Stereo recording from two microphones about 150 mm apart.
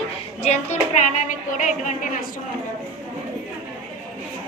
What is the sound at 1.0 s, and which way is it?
A woman's voice, 55° left (ahead or behind).